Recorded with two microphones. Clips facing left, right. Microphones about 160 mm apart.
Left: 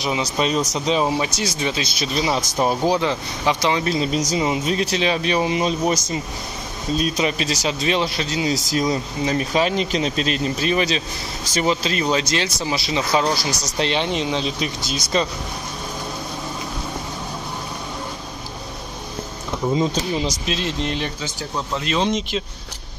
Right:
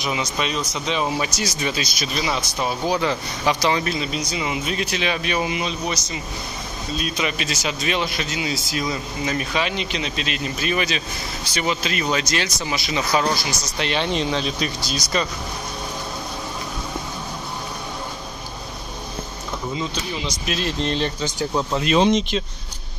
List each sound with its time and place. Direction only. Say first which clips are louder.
0.0 s speech: left 3 dB; 35° left (ahead or behind)
2.5 s speech: left 5 dB; 40° left (ahead or behind); by 3.9 s 20° left (ahead or behind)
3.9 s speech: left 5 dB; 40° left (ahead or behind)
13.4 s speech: left 3 dB; 35° left (ahead or behind)
13.9 s speech: right 3 dB; 15° left (ahead or behind)
19.7 s speech: left 8 dB; 45° left (ahead or behind)
20.4 s speech: even; 20° left (ahead or behind)
21.8 s speech: right 4 dB; 15° right (ahead or behind)